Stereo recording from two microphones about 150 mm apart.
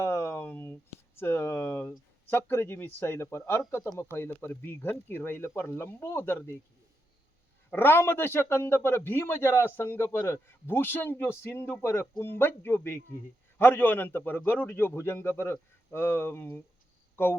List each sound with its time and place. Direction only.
0.0 s a sound: 20° left (ahead or behind)
2.3 s a man's voice: 15° left (ahead or behind)
7.7 s a man's voice: 15° left (ahead or behind)